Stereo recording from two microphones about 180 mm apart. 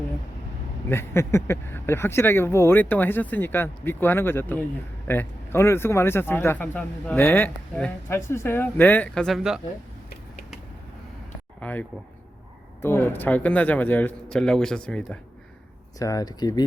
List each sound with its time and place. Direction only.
0.9 s speech: 15° left (ahead or behind)
11.6 s speech: 10° left (ahead or behind)
16.0 s speech: 20° left (ahead or behind)